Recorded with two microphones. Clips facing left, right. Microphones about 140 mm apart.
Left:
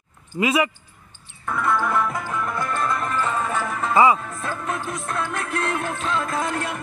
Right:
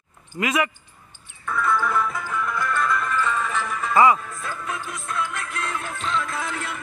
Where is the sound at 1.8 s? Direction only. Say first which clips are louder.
Left 1 dB; 40° left (ahead or behind).